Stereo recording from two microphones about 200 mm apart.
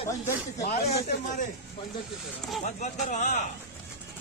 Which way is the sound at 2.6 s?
40° left (ahead or behind).